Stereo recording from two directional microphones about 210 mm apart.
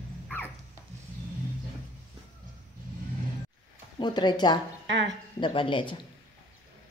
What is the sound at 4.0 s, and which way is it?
A woman's voice, 20° left (ahead or behind).